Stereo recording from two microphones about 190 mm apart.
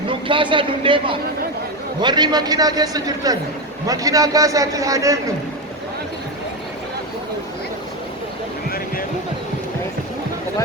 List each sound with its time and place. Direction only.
0.1 s a man's voice: 25° right (ahead or behind)